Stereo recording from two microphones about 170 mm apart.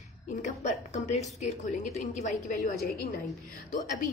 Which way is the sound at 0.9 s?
40° left (ahead or behind).